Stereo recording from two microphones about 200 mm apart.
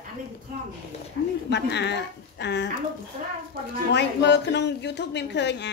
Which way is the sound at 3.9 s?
60° left (ahead or behind).